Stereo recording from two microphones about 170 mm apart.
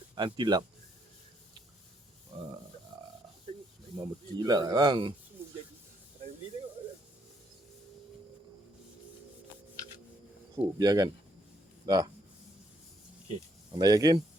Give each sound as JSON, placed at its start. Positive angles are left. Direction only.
{"t": 0.2, "sound": "speech", "side_deg": -25}
{"t": 4.0, "sound": "speech", "side_deg": -25}
{"t": 10.8, "sound": "speech", "side_deg": -20}
{"t": 13.7, "sound": "speech", "side_deg": -20}